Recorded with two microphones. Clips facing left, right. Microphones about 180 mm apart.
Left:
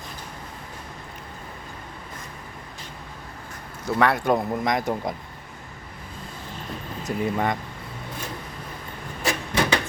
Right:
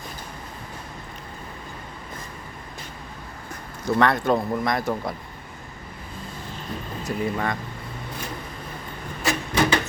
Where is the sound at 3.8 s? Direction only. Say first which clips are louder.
Right 1 dB; 10° left (ahead or behind).